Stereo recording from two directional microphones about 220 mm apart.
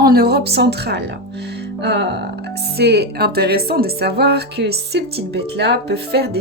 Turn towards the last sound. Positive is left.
turn(degrees=-45)  # may be behind; listen again after turning